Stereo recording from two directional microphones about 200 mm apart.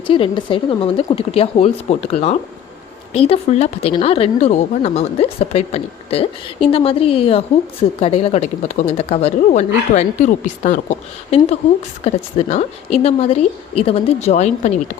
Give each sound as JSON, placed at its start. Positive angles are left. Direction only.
{"t": 0.1, "sound": "speech", "side_deg": 25}